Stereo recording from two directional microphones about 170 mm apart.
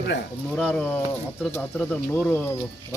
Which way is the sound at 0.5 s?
5° left (ahead or behind).